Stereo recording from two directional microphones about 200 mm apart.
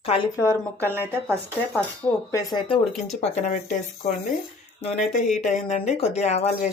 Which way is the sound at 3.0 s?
35° left (ahead or behind).